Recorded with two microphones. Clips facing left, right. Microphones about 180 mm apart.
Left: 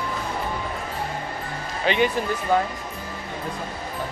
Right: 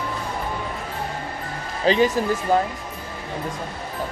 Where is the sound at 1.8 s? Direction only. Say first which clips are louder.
Right 3 dB; 35° right (ahead or behind).